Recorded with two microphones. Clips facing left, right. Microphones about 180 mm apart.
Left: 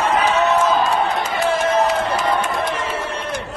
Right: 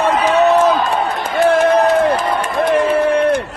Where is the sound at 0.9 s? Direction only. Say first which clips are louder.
Right 1 dB; 60° right (ahead or behind).